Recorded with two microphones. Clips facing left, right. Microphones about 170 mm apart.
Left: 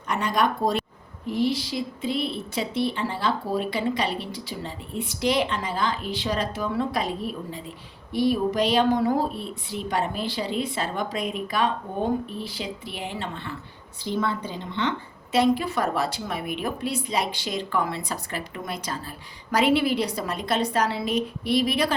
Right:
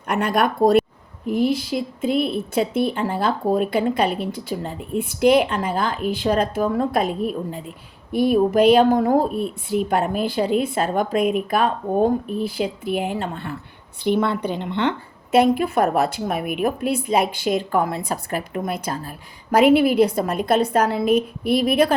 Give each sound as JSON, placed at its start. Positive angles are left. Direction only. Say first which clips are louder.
{"t": 0.1, "sound": "a woman's voice", "louder": "right 4 dB", "side_deg": -60}
{"t": 14.0, "sound": "a woman's voice", "louder": "right 7 dB", "side_deg": -65}